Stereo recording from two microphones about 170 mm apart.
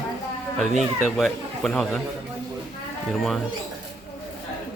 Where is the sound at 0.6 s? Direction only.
Centre (ahead or behind).